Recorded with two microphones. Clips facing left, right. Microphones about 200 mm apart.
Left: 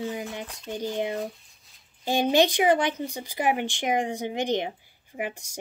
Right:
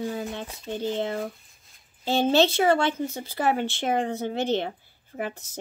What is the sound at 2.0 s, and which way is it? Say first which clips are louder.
Speech: right 1 dB; 15° left (ahead or behind).